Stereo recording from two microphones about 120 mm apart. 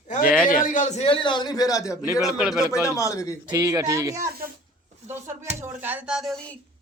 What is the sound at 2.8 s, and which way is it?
Speech, 25° left (ahead or behind).